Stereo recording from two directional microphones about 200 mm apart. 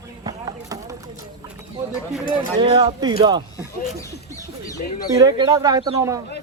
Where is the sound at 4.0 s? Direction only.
15° left (ahead or behind).